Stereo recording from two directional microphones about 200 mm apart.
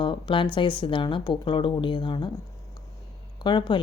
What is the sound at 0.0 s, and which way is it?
Speech, 25° left (ahead or behind).